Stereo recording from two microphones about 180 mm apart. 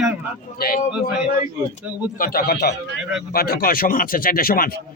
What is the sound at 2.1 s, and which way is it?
A man's voice, 55° left (ahead or behind).